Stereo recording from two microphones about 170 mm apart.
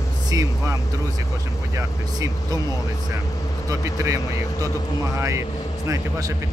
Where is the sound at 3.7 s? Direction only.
20° right (ahead or behind).